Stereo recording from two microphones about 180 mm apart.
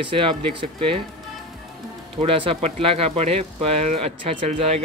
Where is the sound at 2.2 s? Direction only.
30° right (ahead or behind).